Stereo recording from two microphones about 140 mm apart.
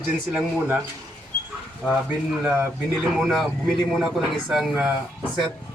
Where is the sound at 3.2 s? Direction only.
Centre (ahead or behind).